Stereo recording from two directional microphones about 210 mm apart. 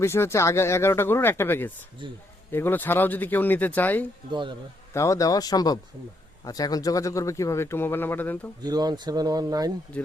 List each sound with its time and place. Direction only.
0.0 s speech: 10° left (ahead or behind)
4.3 s speech: 20° right (ahead or behind)
4.9 s speech: 15° left (ahead or behind)
8.6 s speech: 20° right (ahead or behind)